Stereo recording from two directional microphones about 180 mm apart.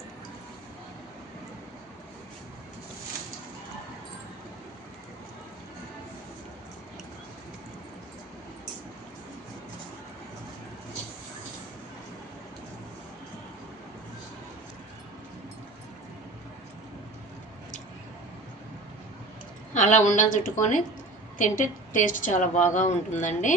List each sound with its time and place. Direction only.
19.7 s a woman's voice: 45° left (ahead or behind)